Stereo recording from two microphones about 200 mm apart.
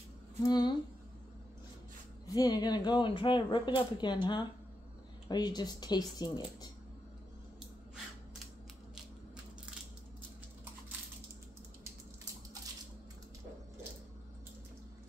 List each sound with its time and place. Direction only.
0.4 s speech: 20° left (ahead or behind)
2.2 s speech: 20° left (ahead or behind)